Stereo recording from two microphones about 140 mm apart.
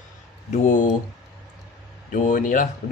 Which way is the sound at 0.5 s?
60° left (ahead or behind).